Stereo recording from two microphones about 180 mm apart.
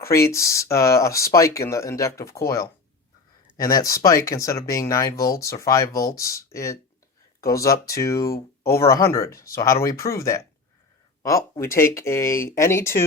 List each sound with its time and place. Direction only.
0.0 s speech: 15° left (ahead or behind)